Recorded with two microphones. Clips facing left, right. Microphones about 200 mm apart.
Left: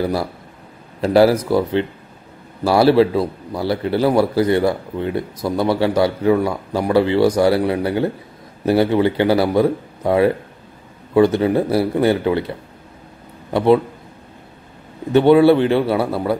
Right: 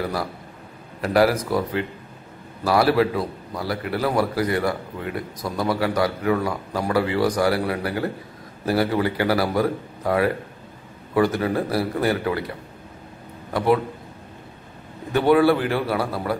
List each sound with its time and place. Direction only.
1.0 s a man's voice: 30° left (ahead or behind)
13.5 s a man's voice: 25° left (ahead or behind)
15.1 s a man's voice: 25° left (ahead or behind)